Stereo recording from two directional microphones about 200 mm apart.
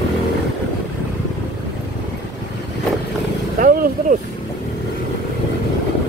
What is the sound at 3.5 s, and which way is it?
Vehicle, 45° right (ahead or behind).